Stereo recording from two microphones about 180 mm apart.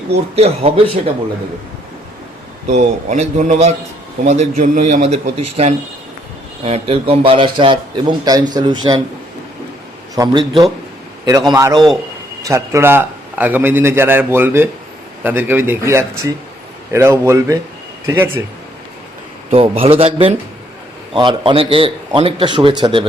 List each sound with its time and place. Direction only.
0.3 s a man's voice: 35° right (ahead or behind)
2.6 s a man's voice: 40° right (ahead or behind)
10.2 s a man's voice: 20° right (ahead or behind)
19.5 s a man's voice: 35° right (ahead or behind)